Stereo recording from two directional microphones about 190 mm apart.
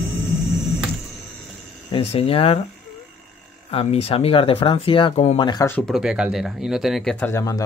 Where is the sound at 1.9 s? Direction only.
30° left (ahead or behind).